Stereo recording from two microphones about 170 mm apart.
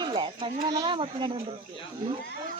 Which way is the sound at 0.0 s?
25° right (ahead or behind).